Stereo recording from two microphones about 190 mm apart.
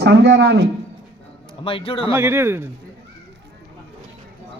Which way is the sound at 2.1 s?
10° right (ahead or behind).